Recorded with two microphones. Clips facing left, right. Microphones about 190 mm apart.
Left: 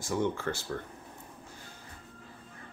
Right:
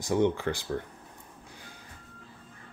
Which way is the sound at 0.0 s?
20° right (ahead or behind).